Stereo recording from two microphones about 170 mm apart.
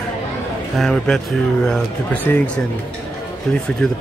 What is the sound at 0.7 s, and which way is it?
A man's voice, 5° left (ahead or behind).